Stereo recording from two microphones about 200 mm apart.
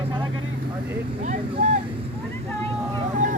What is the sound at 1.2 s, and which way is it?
Speech, 40° right (ahead or behind).